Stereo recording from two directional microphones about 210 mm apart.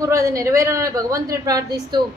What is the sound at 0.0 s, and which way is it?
A woman's voice, 15° right (ahead or behind).